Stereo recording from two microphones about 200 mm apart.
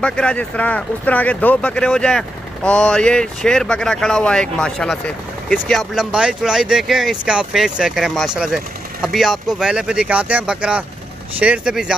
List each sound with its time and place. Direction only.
0.0 s speech: 5° left (ahead or behind)